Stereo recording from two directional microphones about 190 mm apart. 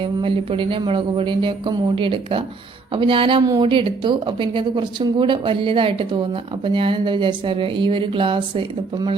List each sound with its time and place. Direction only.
0.0 s a woman's voice: 30° right (ahead or behind)